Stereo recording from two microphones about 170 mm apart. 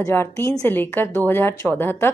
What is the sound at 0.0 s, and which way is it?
A woman's voice, 15° left (ahead or behind).